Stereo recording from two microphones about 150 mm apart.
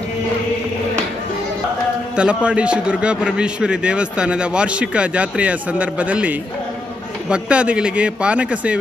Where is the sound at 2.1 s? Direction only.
5° right (ahead or behind).